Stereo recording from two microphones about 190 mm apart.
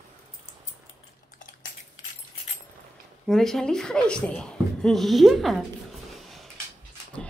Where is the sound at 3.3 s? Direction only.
Centre (ahead or behind).